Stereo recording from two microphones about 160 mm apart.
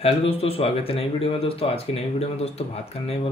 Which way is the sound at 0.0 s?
40° left (ahead or behind).